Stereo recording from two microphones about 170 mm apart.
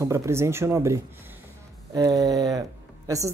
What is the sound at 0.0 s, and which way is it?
Speech, 15° right (ahead or behind).